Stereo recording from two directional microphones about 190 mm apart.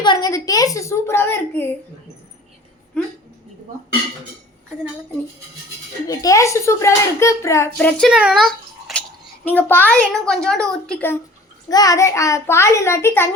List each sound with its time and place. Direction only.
0.0 s a child's voice: 20° left (ahead or behind)
3.0 s speech: 5° left (ahead or behind)
6.1 s a child's voice: 15° left (ahead or behind)
11.7 s a child's voice: 20° left (ahead or behind)